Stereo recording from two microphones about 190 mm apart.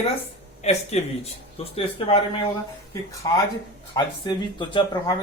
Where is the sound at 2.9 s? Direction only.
15° left (ahead or behind).